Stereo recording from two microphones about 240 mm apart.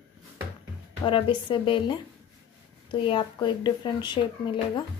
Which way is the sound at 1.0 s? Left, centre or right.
Centre.